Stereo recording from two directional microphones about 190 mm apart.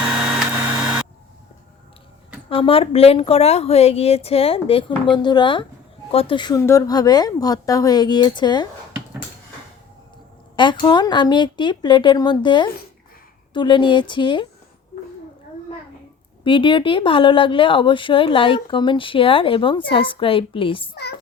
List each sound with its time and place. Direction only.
2.5 s a woman's voice: 30° left (ahead or behind)
10.6 s speech: 25° left (ahead or behind)
16.4 s speech: 25° left (ahead or behind)
20.9 s a child's voice: 60° left (ahead or behind)